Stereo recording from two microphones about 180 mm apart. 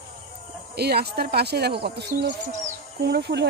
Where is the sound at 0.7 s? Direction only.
60° right (ahead or behind).